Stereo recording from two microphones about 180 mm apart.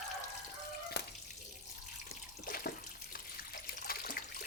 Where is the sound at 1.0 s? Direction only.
65° left (ahead or behind).